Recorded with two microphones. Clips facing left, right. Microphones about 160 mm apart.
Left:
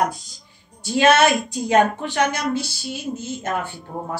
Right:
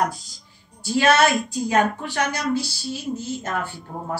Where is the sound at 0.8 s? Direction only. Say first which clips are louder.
Left 2 dB; 20° left (ahead or behind).